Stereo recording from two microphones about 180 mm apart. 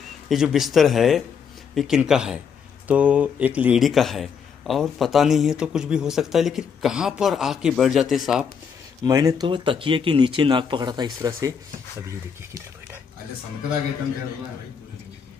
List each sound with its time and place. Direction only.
0.3 s speech: centre (ahead or behind)
9.0 s speech: 20° right (ahead or behind)